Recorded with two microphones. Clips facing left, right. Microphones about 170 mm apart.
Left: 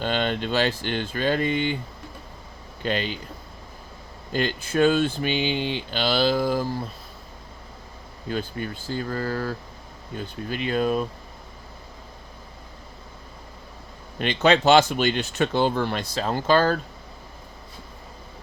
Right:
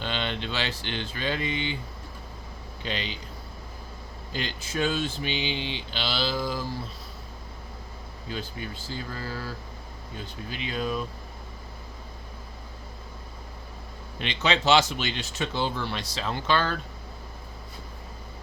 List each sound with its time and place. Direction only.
0.0 s speech: 45° left (ahead or behind)
2.8 s speech: 50° left (ahead or behind)
4.3 s speech: 50° left (ahead or behind)
8.3 s speech: 55° left (ahead or behind)
14.2 s speech: 50° left (ahead or behind)